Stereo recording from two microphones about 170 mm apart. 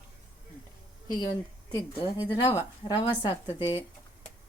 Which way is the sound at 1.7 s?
25° left (ahead or behind).